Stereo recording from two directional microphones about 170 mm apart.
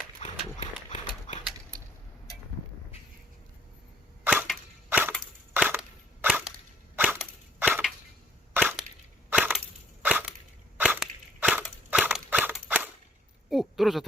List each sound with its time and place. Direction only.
0.2 s horse: 40° left (ahead or behind)
4.2 s cap gun: 10° right (ahead or behind)
5.5 s crushing: 10° right (ahead or behind)
6.2 s whip: 10° right (ahead or behind)
6.9 s crushing: 10° right (ahead or behind)
8.5 s a sound: 10° right (ahead or behind)
9.3 s crushing: 5° right (ahead or behind)
10.0 s a sound: 10° right (ahead or behind)
10.8 s crushing: 10° right (ahead or behind)
12.5 s cap gun: 10° right (ahead or behind)
13.5 s a sound: centre (ahead or behind)